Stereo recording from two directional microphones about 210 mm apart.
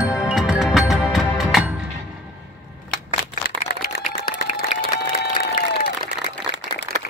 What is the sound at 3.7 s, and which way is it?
Applause, 45° left (ahead or behind).